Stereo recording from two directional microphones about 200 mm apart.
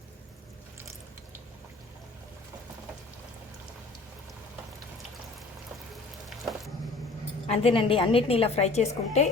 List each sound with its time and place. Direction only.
7.4 s a woman's voice: 30° left (ahead or behind)